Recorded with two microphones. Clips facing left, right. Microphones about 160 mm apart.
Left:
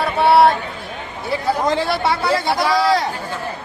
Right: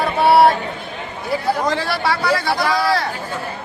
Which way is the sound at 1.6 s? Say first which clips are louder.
Left 2 dB; 20° left (ahead or behind).